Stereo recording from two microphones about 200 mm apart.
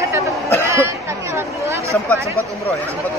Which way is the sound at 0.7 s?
15° right (ahead or behind).